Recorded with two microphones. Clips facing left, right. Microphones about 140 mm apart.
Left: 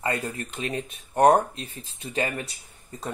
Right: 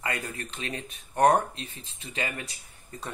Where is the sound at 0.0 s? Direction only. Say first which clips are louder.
Left 5 dB; 30° left (ahead or behind).